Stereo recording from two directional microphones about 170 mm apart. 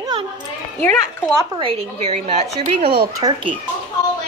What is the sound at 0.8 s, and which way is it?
Speech, 10° left (ahead or behind).